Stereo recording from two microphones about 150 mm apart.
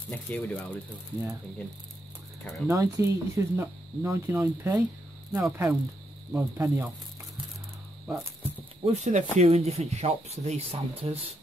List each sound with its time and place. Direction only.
0.1 s speech: 10° left (ahead or behind)
2.7 s speech: 20° right (ahead or behind)
8.8 s speech: 50° right (ahead or behind)